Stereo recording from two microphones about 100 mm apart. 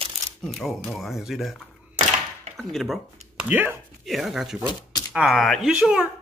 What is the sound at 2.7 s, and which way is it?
Speech, centre (ahead or behind).